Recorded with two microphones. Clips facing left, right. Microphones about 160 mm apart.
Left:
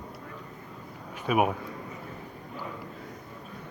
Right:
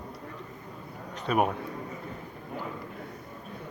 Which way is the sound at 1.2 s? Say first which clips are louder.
Left 1 dB; 10° left (ahead or behind).